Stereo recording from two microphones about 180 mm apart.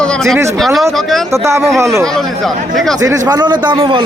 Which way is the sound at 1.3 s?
15° right (ahead or behind).